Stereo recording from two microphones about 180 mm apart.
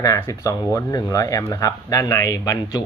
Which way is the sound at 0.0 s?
20° left (ahead or behind).